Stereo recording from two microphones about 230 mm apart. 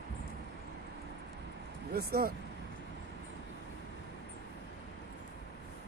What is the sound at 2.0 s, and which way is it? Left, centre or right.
Speech, right.